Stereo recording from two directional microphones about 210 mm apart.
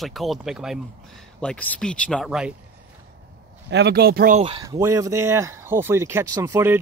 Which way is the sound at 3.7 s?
50° right (ahead or behind).